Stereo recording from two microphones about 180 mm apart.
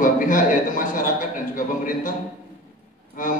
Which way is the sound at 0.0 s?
50° left (ahead or behind).